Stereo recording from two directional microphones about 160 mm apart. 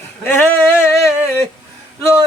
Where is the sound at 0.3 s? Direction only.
15° left (ahead or behind).